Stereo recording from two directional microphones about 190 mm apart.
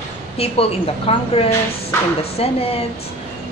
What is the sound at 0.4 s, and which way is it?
A woman's voice, 30° left (ahead or behind).